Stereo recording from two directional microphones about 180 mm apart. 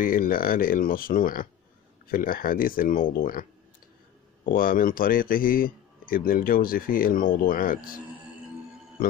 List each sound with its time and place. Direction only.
0.0 s a man's voice: 50° left (ahead or behind)
4.5 s a man's voice: 50° left (ahead or behind)